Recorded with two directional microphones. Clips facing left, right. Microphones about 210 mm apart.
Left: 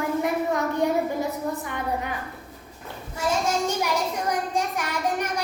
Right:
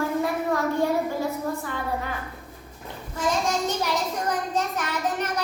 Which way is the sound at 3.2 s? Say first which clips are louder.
Even; 10° left (ahead or behind).